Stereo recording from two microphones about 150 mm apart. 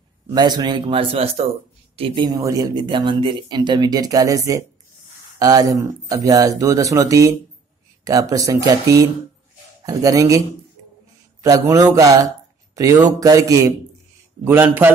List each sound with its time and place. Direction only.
0.3 s a man's voice: 25° right (ahead or behind)
2.3 s speech: 20° right (ahead or behind)
11.7 s a man's voice: 25° right (ahead or behind)